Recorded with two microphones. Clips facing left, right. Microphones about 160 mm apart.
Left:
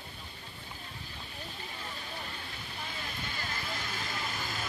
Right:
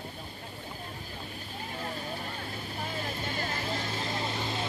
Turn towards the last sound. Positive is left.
turn(degrees=-30)  # may be behind; listen again after turning